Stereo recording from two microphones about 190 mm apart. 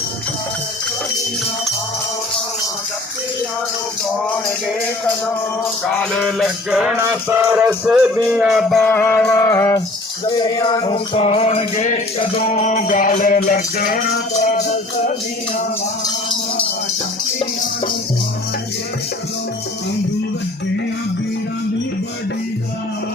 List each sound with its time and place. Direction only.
5.8 s music: 5° left (ahead or behind); by 15.1 s 45° left (ahead or behind)